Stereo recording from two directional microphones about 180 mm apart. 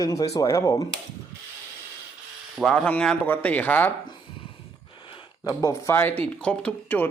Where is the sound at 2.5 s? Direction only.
Centre (ahead or behind).